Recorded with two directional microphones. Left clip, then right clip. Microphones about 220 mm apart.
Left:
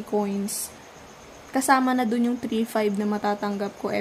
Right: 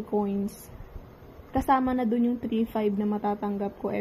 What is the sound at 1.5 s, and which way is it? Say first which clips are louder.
A woman's voice: left 4 dB; 20° left (ahead or behind).